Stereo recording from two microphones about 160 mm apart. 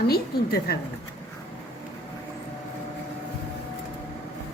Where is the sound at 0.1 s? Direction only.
80° left.